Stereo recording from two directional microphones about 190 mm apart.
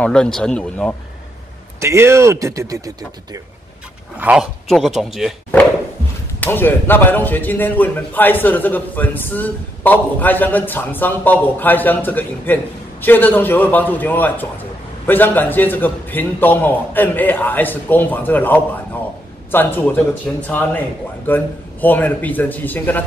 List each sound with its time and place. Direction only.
0.0 s speech: 5° left (ahead or behind)
1.8 s speech: 15° right (ahead or behind)
4.2 s speech: 5° right (ahead or behind)
6.4 s speech: 10° left (ahead or behind)